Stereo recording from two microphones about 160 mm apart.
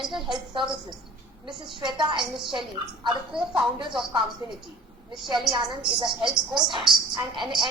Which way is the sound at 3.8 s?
30° right (ahead or behind).